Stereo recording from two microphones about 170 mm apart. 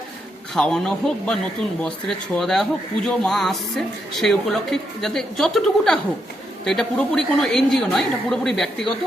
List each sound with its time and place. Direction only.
0.5 s speech: 5° left (ahead or behind)